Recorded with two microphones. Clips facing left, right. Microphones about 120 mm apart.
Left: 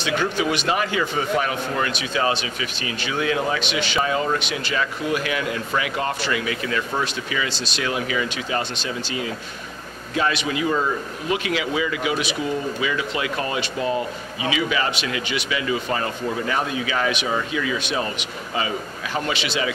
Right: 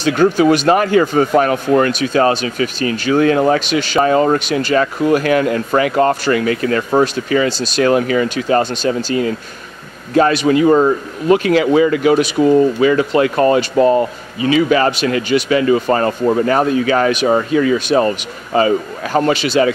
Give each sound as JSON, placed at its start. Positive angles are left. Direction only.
{"t": 0.0, "sound": "a man's voice", "side_deg": -45}